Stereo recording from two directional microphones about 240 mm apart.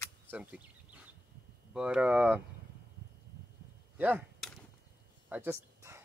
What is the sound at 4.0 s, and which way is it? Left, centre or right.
Speech, centre.